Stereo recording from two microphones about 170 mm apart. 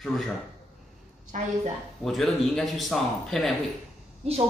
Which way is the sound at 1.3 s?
45° right (ahead or behind).